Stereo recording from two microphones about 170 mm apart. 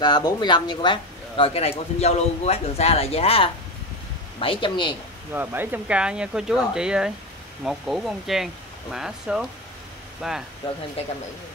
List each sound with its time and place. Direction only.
0.0 s speech: 25° left (ahead or behind)
5.3 s speech: 10° right (ahead or behind)